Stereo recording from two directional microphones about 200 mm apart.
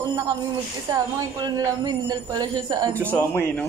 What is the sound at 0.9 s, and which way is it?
A woman's voice, 20° right (ahead or behind).